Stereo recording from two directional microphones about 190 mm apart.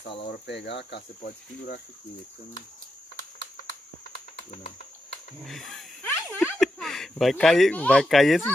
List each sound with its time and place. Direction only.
0.0 s speech: 30° left (ahead or behind)
0.3 s speech: 65° left (ahead or behind)
5.4 s speech: centre (ahead or behind)
6.0 s a sound: 10° left (ahead or behind)
6.6 s speech: centre (ahead or behind)